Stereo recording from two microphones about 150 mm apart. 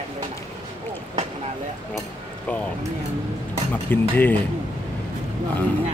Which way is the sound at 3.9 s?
15° left (ahead or behind).